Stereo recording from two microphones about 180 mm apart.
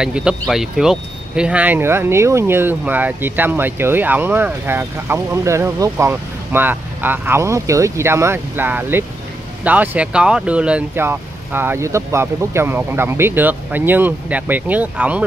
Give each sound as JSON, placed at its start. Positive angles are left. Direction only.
{"t": 0.0, "sound": "speech", "side_deg": -5}